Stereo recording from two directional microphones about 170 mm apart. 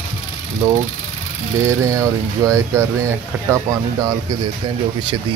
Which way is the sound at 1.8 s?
20° right (ahead or behind).